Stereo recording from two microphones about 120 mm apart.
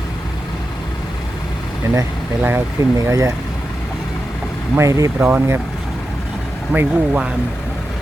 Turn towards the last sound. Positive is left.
turn(degrees=-10)  # may be behind; listen again after turning